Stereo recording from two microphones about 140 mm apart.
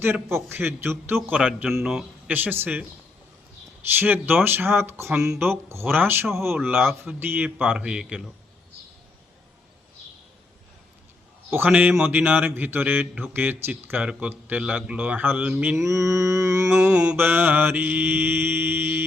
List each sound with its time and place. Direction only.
0.0 s speech: 15° right (ahead or behind)
1.4 s speech: 5° right (ahead or behind)
4.0 s speech: 15° right (ahead or behind)
5.1 s speech: 5° right (ahead or behind)
5.4 s speech: 15° right (ahead or behind)
11.5 s speech: 10° right (ahead or behind)
15.7 s mantra: 20° right (ahead or behind)
16.8 s speech: 5° right (ahead or behind)